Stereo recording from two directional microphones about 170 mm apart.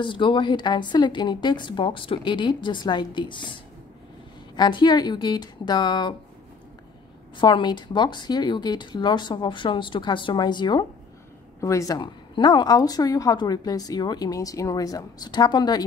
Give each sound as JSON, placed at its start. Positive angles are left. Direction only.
{"t": 0.0, "sound": "a woman's voice", "side_deg": 30}
{"t": 7.3, "sound": "a woman's voice", "side_deg": 25}